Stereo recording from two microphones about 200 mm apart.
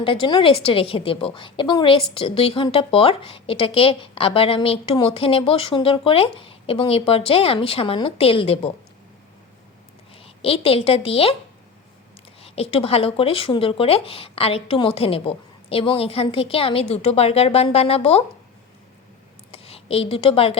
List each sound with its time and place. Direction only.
0.0 s a woman's voice: 25° left (ahead or behind)
10.2 s a woman's voice: 30° left (ahead or behind)
12.4 s a woman's voice: 30° left (ahead or behind)
19.5 s a sound: 30° left (ahead or behind)